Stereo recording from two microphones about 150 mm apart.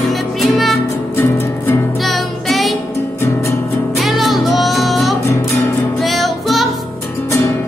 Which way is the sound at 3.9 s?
Centre (ahead or behind).